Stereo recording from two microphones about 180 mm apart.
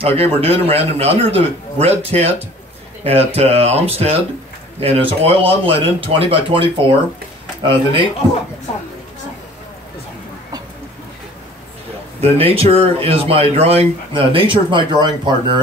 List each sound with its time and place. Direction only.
0.0 s speech: 30° right (ahead or behind)
12.2 s speech: 30° right (ahead or behind)